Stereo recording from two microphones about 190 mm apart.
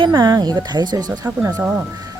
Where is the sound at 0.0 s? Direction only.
20° right (ahead or behind).